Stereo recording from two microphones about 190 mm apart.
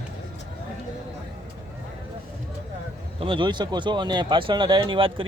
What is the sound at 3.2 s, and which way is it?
Speech, 25° right (ahead or behind).